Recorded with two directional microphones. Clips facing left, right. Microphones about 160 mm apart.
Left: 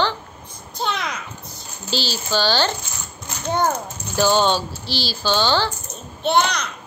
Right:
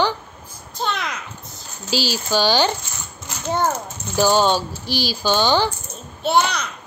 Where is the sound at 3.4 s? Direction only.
5° right (ahead or behind).